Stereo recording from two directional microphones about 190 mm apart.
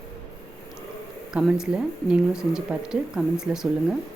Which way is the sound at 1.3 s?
5° right (ahead or behind).